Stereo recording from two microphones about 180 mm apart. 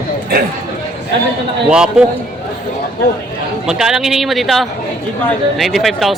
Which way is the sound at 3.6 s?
5° right (ahead or behind).